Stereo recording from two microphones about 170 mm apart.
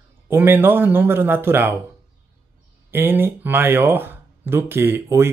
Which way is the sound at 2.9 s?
10° right (ahead or behind).